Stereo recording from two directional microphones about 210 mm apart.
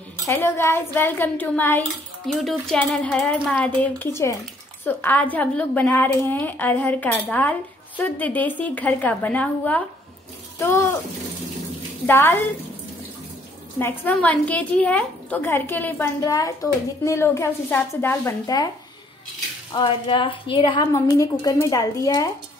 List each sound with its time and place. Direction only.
0.3 s a woman's voice: 10° left (ahead or behind)
12.1 s a woman's voice: 10° left (ahead or behind)
13.7 s a woman's voice: 10° left (ahead or behind)
19.7 s a woman's voice: 25° left (ahead or behind)